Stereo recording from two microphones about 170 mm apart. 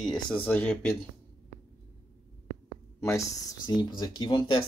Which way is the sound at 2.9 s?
15° left (ahead or behind).